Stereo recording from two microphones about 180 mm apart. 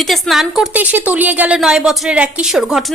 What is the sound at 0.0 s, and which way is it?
A woman's voice, centre (ahead or behind).